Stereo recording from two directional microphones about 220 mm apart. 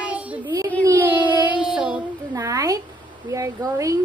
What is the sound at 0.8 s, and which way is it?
Child singing, 10° right (ahead or behind).